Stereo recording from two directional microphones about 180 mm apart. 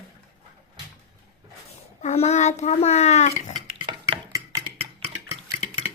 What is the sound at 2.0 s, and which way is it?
A child's voice, 40° left (ahead or behind).